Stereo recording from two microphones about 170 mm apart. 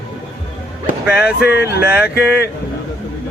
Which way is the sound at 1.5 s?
75° left (ahead or behind).